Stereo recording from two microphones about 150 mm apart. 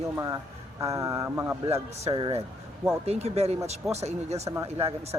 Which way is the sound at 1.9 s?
40° right (ahead or behind).